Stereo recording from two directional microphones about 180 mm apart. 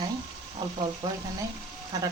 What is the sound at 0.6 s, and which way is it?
Speech, 20° right (ahead or behind).